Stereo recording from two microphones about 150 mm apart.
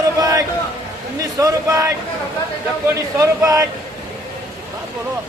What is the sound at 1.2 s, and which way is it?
Speech, 25° right (ahead or behind).